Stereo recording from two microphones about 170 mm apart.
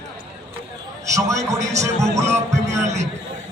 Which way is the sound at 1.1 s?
20° right (ahead or behind).